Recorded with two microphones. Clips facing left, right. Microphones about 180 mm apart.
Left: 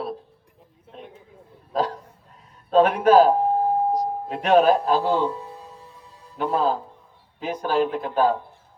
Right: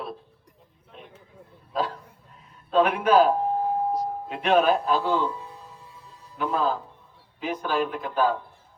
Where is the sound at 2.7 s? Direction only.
40° left (ahead or behind).